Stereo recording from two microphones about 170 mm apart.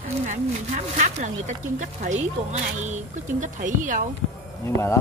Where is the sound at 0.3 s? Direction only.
45° right (ahead or behind).